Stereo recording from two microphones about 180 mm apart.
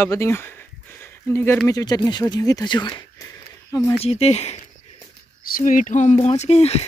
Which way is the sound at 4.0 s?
35° left (ahead or behind).